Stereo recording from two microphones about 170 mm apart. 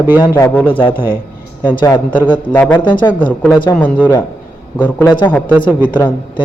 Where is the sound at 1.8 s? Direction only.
25° left (ahead or behind).